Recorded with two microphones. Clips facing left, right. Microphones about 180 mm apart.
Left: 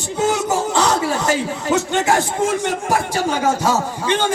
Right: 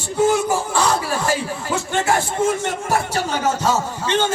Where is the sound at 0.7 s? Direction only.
80° left.